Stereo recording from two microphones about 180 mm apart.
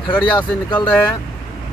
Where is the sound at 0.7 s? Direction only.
10° left (ahead or behind).